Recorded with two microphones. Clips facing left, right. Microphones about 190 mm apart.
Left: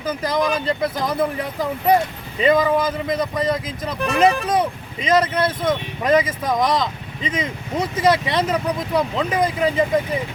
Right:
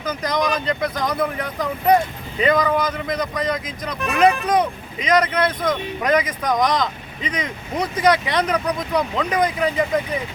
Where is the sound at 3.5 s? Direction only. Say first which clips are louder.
Left 2 dB; 30° left (ahead or behind).